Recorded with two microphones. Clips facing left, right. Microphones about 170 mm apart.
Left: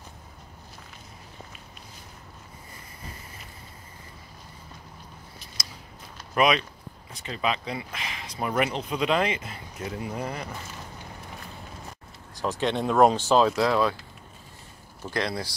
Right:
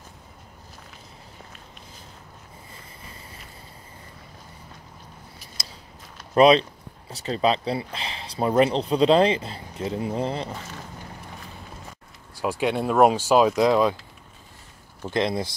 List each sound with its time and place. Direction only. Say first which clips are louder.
6.3 s speech: right 7 dB; 30° right (ahead or behind)
12.4 s speech: right 2 dB; 10° right (ahead or behind)
15.0 s speech: right 5 dB; 20° right (ahead or behind)